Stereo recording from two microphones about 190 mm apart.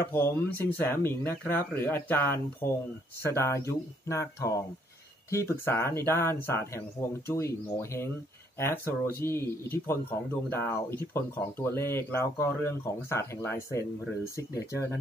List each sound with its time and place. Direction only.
0.1 s speech: 15° left (ahead or behind)